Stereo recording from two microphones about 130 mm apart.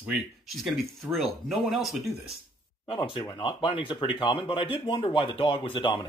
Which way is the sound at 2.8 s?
40° left (ahead or behind).